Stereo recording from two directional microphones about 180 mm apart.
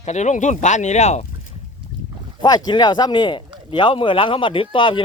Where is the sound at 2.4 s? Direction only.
25° left (ahead or behind).